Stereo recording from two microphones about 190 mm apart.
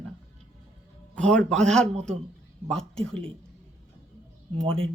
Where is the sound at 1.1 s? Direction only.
5° left (ahead or behind).